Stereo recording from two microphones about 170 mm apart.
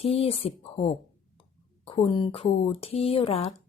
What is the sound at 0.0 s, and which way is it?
Speech, 35° left (ahead or behind).